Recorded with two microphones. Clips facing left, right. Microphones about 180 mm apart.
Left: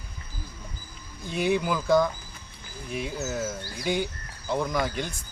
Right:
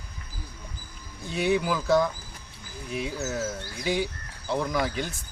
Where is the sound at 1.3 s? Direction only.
Centre (ahead or behind).